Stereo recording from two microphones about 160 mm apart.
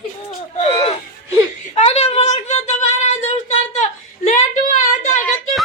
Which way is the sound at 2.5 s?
45° left (ahead or behind).